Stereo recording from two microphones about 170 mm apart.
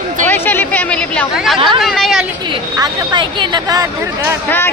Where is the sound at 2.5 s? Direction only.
25° right (ahead or behind).